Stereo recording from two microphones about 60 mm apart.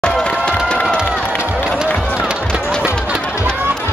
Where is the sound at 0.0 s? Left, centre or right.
Centre.